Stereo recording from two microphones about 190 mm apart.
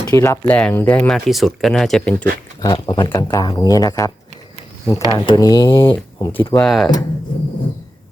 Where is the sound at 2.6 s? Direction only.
25° left (ahead or behind).